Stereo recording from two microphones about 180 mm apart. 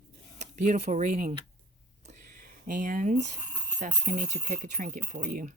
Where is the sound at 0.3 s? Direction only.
40° right (ahead or behind).